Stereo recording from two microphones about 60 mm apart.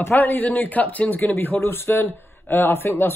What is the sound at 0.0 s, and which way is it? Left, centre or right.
Speech, left.